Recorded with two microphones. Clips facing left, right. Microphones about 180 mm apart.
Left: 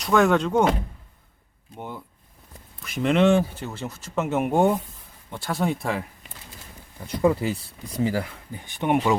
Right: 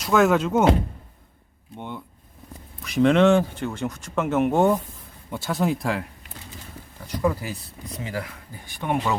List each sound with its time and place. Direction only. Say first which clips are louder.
0.0 s speech: even; centre (ahead or behind)
2.8 s speech: right 3 dB; centre (ahead or behind)
5.3 s speech: right 2 dB; centre (ahead or behind)
7.1 s speech: left 4 dB; 25° left (ahead or behind)